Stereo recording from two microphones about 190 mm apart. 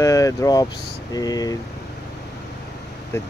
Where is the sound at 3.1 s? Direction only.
15° left (ahead or behind).